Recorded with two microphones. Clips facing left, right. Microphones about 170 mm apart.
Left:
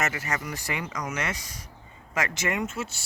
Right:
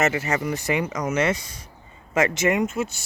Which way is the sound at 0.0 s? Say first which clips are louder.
Right 7 dB; 25° right (ahead or behind).